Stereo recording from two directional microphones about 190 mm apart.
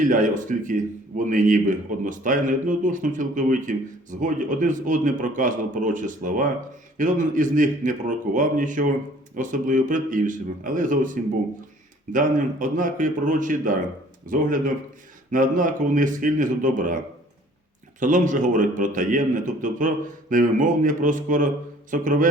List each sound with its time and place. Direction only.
0.0 s a man's voice: 45° right (ahead or behind)
18.0 s a man's voice: 40° right (ahead or behind)